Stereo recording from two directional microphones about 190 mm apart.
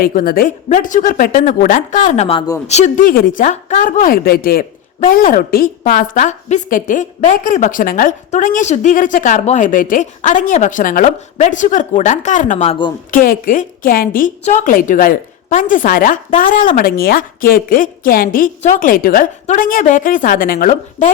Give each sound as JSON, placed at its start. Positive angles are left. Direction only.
{"t": 0.0, "sound": "speech", "side_deg": 50}